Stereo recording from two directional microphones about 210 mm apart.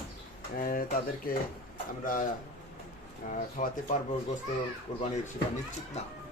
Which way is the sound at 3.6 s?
35° left (ahead or behind).